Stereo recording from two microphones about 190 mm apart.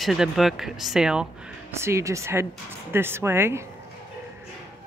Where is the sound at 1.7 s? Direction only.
15° right (ahead or behind).